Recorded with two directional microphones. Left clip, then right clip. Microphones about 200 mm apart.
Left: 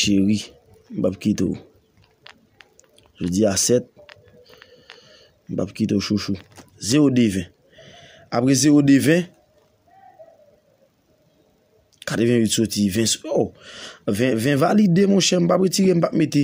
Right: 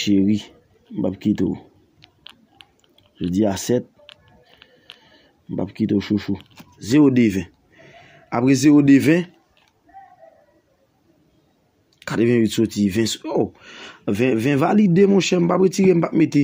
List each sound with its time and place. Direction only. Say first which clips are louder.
0.0 s speech: right 1 dB; 10° left (ahead or behind)
2.8 s speech: right 1 dB; 10° left (ahead or behind)
4.8 s a sound: even; 10° left (ahead or behind)
6.3 s speech: right 2 dB; 5° left (ahead or behind)
12.0 s speech: right 1 dB; 5° left (ahead or behind)